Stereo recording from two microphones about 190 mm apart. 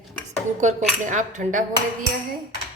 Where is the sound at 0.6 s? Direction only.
40° right (ahead or behind).